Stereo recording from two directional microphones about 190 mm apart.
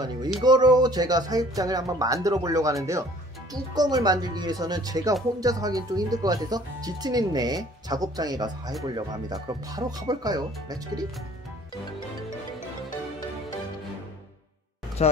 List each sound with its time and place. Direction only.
0.4 s speech: 20° right (ahead or behind)
15.0 s speech: 35° left (ahead or behind)